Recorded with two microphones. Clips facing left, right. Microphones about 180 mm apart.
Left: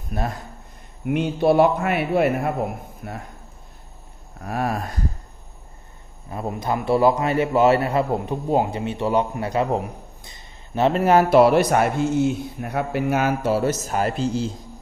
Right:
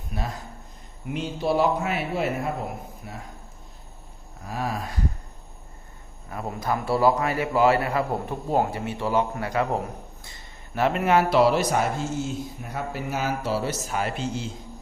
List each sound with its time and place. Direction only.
0.1 s speech: 50° left (ahead or behind)
1.0 s a man's voice: 60° left (ahead or behind)
4.4 s a man's voice: 60° left (ahead or behind)
6.3 s a man's voice: 20° left (ahead or behind); by 14.5 s 35° left (ahead or behind)